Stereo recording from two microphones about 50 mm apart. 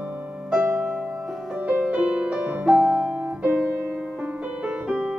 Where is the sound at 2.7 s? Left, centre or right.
Centre.